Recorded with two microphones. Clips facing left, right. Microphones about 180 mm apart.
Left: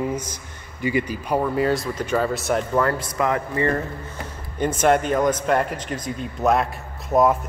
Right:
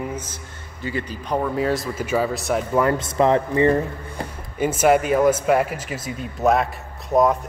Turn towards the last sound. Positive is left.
turn(degrees=0)  # may be behind; listen again after turning